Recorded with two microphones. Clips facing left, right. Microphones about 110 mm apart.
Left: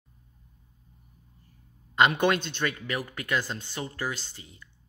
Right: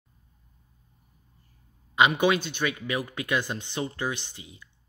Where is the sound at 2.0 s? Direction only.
10° right (ahead or behind).